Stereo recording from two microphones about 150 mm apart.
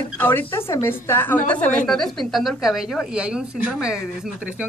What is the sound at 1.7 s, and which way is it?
A woman's voice, 5° left (ahead or behind).